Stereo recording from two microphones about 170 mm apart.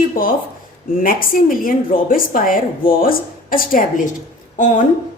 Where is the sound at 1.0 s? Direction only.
55° left (ahead or behind).